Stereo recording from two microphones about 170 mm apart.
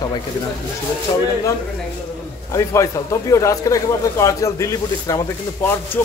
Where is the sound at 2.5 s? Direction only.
15° left (ahead or behind).